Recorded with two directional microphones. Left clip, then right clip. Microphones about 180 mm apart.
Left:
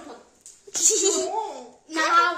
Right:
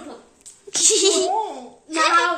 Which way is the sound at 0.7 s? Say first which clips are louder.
Right 5 dB; centre (ahead or behind).